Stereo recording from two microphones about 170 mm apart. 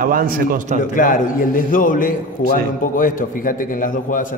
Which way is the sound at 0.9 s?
50° left (ahead or behind).